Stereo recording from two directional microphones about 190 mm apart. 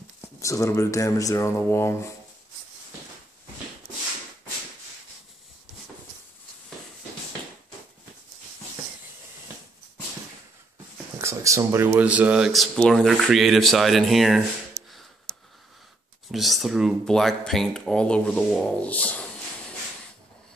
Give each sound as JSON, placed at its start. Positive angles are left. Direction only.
{"t": 0.2, "sound": "speech", "side_deg": 15}
{"t": 11.1, "sound": "speech", "side_deg": -15}
{"t": 16.3, "sound": "speech", "side_deg": 0}